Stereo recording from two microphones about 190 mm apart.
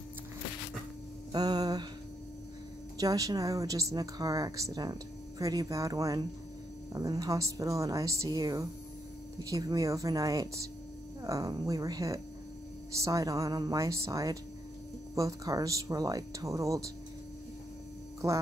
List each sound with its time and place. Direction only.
1.3 s mantra: 20° right (ahead or behind)
3.0 s speech: 20° right (ahead or behind)